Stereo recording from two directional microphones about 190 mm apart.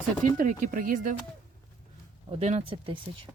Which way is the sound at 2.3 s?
35° right (ahead or behind).